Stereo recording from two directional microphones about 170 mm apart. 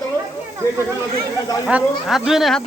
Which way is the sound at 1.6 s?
5° right (ahead or behind).